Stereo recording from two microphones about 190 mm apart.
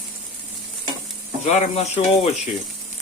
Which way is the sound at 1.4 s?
40° left (ahead or behind).